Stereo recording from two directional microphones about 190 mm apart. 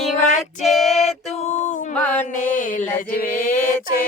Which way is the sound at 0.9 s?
35° left (ahead or behind).